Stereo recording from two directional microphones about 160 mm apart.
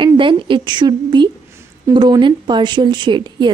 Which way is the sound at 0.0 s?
30° right (ahead or behind).